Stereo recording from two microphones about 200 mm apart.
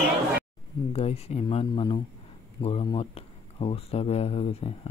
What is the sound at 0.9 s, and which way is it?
Speech, 30° left (ahead or behind).